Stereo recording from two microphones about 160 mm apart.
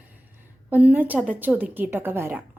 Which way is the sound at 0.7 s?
10° right (ahead or behind).